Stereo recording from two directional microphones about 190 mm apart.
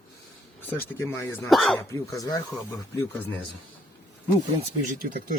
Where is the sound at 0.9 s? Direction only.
15° left (ahead or behind).